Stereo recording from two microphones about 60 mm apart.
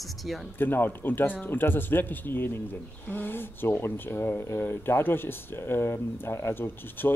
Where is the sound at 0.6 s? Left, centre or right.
Left.